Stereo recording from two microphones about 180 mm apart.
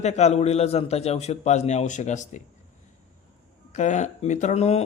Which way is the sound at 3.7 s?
40° left (ahead or behind).